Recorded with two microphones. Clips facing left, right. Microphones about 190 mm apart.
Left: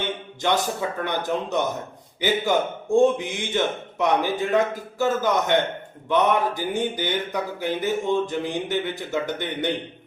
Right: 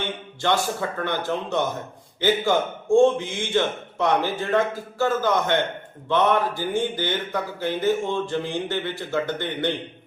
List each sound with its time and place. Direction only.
0.4 s speech: 20° left (ahead or behind)